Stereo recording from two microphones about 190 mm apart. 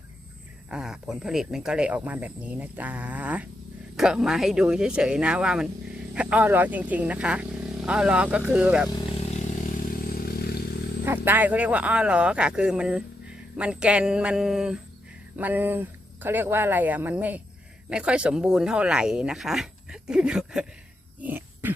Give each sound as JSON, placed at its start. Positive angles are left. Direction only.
{"t": 0.7, "sound": "speech", "side_deg": -5}
{"t": 8.9, "sound": "vehicle", "side_deg": 20}
{"t": 10.0, "sound": "vehicle", "side_deg": 50}
{"t": 11.0, "sound": "speech", "side_deg": -10}
{"t": 21.2, "sound": "a sound", "side_deg": -10}